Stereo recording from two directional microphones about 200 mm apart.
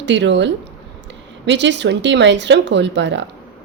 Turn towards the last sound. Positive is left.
turn(degrees=-65)  # may be behind; listen again after turning